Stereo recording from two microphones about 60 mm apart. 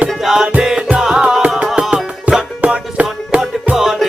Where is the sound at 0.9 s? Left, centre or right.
Centre.